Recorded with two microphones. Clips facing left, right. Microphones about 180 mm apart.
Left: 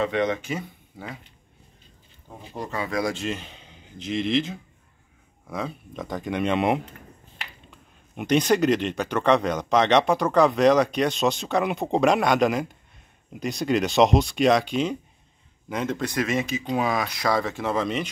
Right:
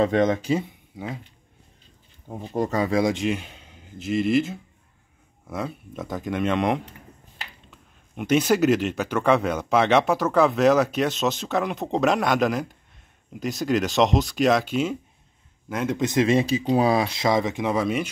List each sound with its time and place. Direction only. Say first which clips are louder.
0.0 s speech: right 4 dB; 45° right (ahead or behind)
2.2 s speech: right 9 dB; 45° right (ahead or behind)
2.9 s speech: right 5 dB; 20° right (ahead or behind)
16.0 s speech: right 9 dB; 25° right (ahead or behind)